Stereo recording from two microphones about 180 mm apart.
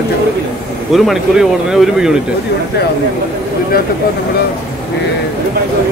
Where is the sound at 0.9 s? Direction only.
Centre (ahead or behind).